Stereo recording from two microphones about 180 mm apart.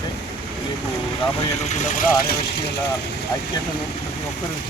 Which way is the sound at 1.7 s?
45° left (ahead or behind).